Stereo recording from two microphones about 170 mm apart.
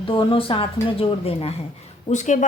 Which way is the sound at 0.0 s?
30° left (ahead or behind).